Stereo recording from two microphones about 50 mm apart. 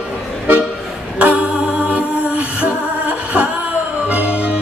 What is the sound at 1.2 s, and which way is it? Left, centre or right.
Music, right.